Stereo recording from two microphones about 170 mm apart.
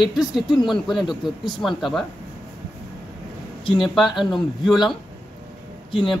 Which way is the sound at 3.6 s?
30° left (ahead or behind).